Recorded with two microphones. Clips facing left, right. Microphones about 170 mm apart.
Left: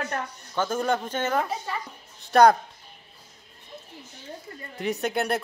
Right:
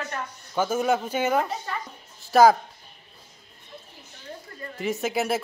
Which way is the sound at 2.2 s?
Centre (ahead or behind).